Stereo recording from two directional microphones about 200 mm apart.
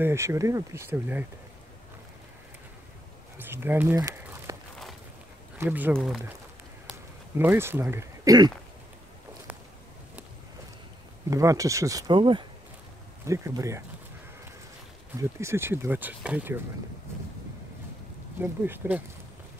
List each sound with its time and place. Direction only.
0.0 s speech: 15° right (ahead or behind)
3.3 s speech: 10° right (ahead or behind)
5.6 s speech: 10° right (ahead or behind)
7.3 s speech: 10° right (ahead or behind)
11.2 s speech: 15° right (ahead or behind)
15.1 s speech: 15° right (ahead or behind)
18.4 s speech: 10° right (ahead or behind)